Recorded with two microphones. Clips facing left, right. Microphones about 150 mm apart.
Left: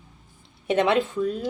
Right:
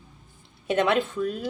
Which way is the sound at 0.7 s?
25° left (ahead or behind).